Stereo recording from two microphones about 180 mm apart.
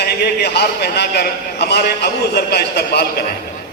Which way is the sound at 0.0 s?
60° left (ahead or behind).